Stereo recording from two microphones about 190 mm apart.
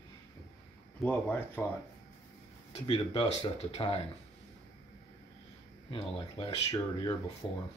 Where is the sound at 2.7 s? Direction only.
30° left (ahead or behind).